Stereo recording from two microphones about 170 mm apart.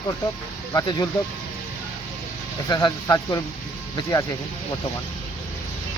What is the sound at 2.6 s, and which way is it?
Speech, 20° left (ahead or behind).